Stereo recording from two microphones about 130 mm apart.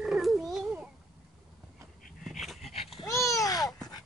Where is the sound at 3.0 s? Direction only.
25° left (ahead or behind).